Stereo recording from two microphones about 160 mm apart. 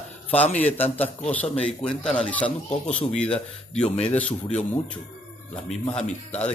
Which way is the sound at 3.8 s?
40° left (ahead or behind).